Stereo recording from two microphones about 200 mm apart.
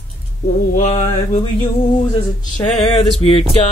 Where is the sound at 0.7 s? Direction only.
35° left (ahead or behind).